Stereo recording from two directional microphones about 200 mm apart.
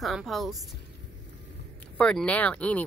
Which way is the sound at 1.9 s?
5° left (ahead or behind).